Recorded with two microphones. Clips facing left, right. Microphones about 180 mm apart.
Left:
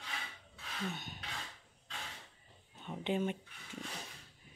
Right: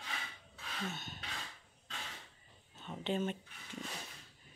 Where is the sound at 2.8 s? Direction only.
15° left (ahead or behind).